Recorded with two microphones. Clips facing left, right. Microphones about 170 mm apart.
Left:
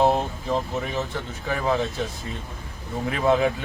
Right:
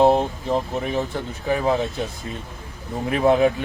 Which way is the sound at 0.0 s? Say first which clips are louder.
Right 4 dB; 20° right (ahead or behind).